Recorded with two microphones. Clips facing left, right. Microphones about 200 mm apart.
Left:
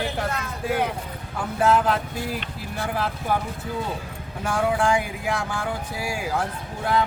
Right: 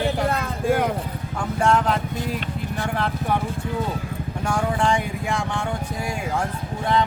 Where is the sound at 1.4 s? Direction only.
5° left (ahead or behind).